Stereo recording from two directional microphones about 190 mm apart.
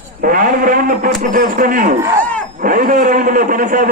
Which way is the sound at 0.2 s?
45° right (ahead or behind).